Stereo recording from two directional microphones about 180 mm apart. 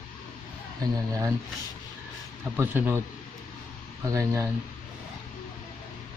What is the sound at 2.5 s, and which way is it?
Speech, 10° right (ahead or behind).